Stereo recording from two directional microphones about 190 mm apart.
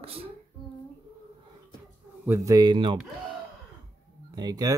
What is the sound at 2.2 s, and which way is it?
Speech, 15° right (ahead or behind).